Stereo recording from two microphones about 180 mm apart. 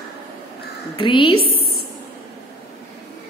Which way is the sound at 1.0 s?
25° left (ahead or behind).